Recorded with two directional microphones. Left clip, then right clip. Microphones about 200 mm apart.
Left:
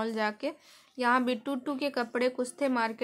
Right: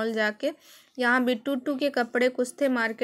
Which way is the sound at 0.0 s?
15° right (ahead or behind).